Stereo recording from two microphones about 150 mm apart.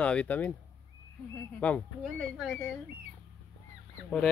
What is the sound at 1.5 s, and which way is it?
Speech, 10° left (ahead or behind).